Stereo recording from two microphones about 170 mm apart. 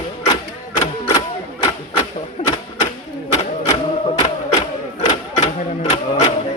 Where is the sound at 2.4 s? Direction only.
40° left (ahead or behind).